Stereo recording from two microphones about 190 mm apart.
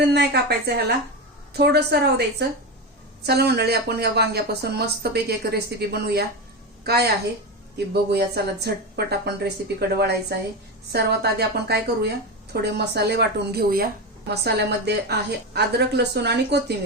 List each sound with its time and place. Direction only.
0.1 s speech: 60° right (ahead or behind)
8.1 s speech: 60° right (ahead or behind)